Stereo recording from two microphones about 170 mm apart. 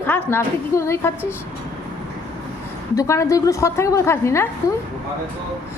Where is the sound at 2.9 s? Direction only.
20° left (ahead or behind).